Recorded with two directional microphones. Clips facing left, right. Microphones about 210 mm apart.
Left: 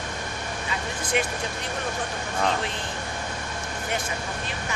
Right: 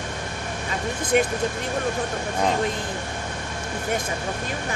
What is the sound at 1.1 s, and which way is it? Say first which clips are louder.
Speech: right 6 dB; 45° right (ahead or behind).